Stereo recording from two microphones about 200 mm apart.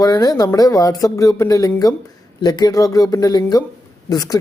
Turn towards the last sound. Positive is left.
turn(degrees=20)  # may be behind; listen again after turning